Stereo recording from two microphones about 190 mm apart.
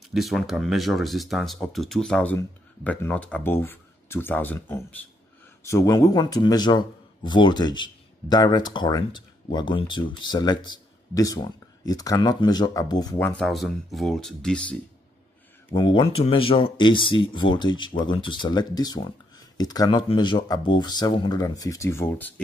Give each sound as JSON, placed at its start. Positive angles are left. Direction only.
{"t": 0.1, "sound": "speech", "side_deg": 0}
{"t": 13.4, "sound": "speech", "side_deg": 0}
{"t": 15.7, "sound": "speech", "side_deg": 25}